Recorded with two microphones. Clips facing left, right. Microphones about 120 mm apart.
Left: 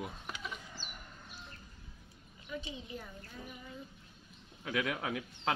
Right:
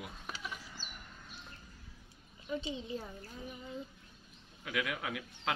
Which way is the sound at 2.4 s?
30° right (ahead or behind).